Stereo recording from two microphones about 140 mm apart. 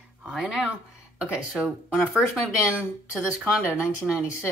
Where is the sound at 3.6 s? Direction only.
20° left (ahead or behind).